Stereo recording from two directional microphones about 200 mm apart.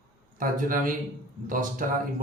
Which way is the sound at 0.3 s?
45° right (ahead or behind).